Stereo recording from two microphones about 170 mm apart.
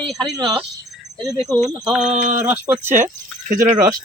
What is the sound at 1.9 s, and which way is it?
Speech, 5° right (ahead or behind).